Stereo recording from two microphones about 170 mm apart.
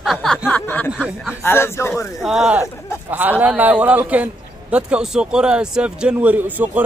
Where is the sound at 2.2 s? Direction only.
5° right (ahead or behind).